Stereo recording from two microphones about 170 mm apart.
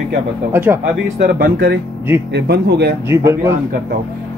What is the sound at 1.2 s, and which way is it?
Speech, 65° right (ahead or behind).